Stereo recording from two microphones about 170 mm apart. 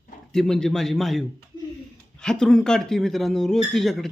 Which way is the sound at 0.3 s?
5° left (ahead or behind).